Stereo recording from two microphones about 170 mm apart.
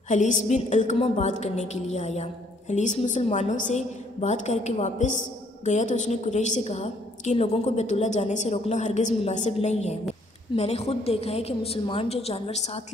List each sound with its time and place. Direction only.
0.1 s a woman's voice: 45° left (ahead or behind)